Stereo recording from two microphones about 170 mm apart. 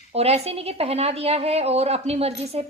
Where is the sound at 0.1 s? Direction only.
35° right (ahead or behind).